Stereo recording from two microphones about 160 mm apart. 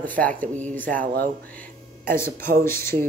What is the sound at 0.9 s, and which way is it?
Speech, 60° right (ahead or behind).